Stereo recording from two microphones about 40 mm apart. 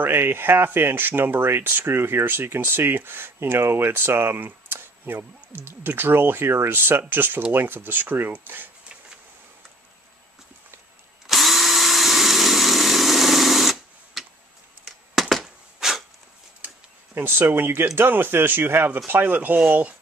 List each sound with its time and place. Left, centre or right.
0.0 s speech: right
2.0 s speech: right
11.2 s drill: centre
14.9 s a sound: centre
15.4 s a sound: centre
17.1 s speech: right
19.7 s speech: right